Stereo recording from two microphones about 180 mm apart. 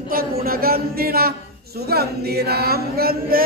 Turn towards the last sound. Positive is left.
turn(degrees=-55)  # may be behind; listen again after turning